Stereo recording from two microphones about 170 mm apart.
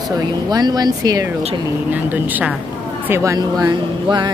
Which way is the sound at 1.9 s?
10° right (ahead or behind).